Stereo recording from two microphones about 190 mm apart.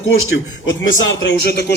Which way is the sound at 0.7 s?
75° left (ahead or behind).